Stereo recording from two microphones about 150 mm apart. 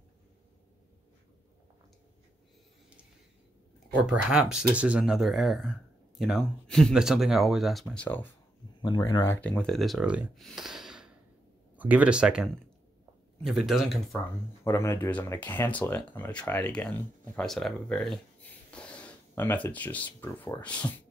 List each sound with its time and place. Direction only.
3.9 s speech: 10° right (ahead or behind); by 8.3 s 10° left (ahead or behind)
8.8 s speech: 30° left (ahead or behind)
9.2 s speech: 15° left (ahead or behind)
14.6 s speech: 15° left (ahead or behind)